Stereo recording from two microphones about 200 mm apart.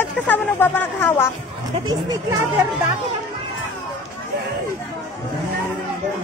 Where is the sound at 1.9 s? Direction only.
20° right (ahead or behind).